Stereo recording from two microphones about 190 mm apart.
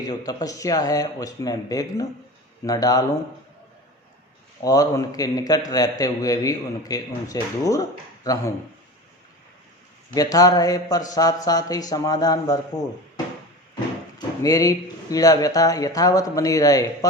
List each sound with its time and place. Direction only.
0.0 s a man's voice: 20° left (ahead or behind)
4.6 s a man's voice: 20° left (ahead or behind)
10.2 s a man's voice: 20° left (ahead or behind)
14.2 s a man's voice: 20° left (ahead or behind)